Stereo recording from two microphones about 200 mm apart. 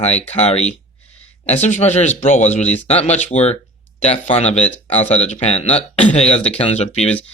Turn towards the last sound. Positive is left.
turn(degrees=35)  # may be behind; listen again after turning